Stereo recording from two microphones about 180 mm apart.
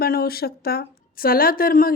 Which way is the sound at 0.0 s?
60° left (ahead or behind).